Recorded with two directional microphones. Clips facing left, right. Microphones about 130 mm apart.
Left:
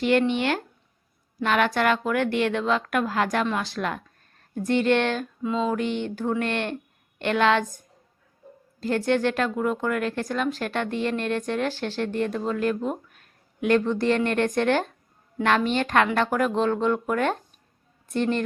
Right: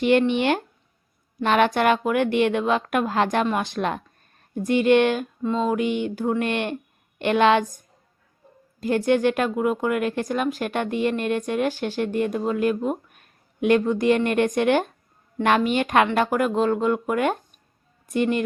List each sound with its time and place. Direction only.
0.0 s speech: 20° right (ahead or behind)
5.4 s a sound: 5° left (ahead or behind)
5.6 s speech: 10° right (ahead or behind)
8.8 s speech: 15° right (ahead or behind)
13.1 s a sound: 15° right (ahead or behind)
14.3 s speech: 15° right (ahead or behind)